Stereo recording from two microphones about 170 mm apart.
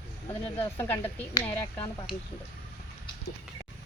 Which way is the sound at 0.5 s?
15° left (ahead or behind).